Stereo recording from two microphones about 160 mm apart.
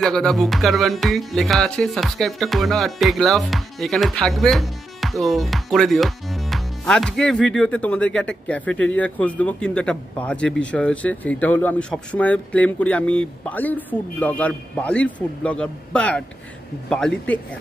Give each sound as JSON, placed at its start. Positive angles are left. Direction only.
{"t": 0.0, "sound": "music", "side_deg": 5}